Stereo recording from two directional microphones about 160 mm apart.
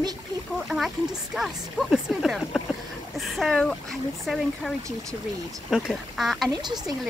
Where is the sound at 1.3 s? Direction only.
Centre (ahead or behind).